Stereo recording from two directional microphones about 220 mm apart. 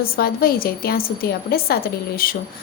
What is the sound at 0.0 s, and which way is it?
A woman's voice, 40° left (ahead or behind).